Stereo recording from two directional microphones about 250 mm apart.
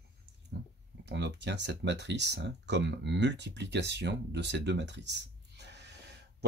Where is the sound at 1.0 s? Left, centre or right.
Right.